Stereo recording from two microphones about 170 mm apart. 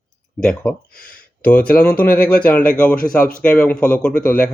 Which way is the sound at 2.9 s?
55° left (ahead or behind).